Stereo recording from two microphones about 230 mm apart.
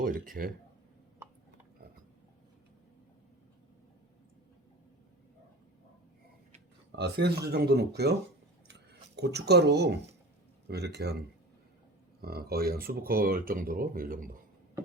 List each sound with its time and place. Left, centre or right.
0.0 s speech: right
6.9 s speech: right
8.6 s a sound: right
10.7 s speech: right
12.2 s speech: right